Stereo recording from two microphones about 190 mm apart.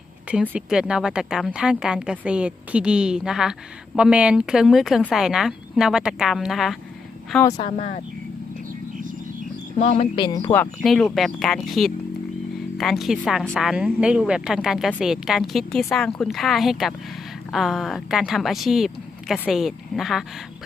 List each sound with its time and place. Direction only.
0.5 s a woman's voice: 5° right (ahead or behind)
7.5 s speech: 30° left (ahead or behind)
9.0 s a sound: 45° right (ahead or behind)
9.7 s speech: 35° left (ahead or behind); by 10.7 s 15° left (ahead or behind)
10.8 s a woman's voice: centre (ahead or behind)